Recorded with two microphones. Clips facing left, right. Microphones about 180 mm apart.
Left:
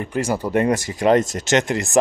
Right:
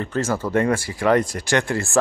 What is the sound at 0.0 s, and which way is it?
Speech, 15° left (ahead or behind).